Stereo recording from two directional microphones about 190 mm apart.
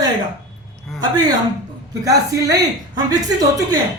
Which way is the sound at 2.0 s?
15° right (ahead or behind).